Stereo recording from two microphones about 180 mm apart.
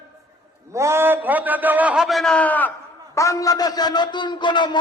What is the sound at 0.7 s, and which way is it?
A man's voice, 15° right (ahead or behind).